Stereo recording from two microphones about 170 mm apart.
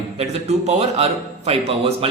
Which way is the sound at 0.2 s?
40° right (ahead or behind).